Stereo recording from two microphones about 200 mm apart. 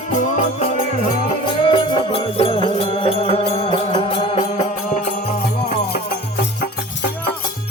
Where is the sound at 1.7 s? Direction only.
25° left (ahead or behind); by 5.2 s 40° left (ahead or behind).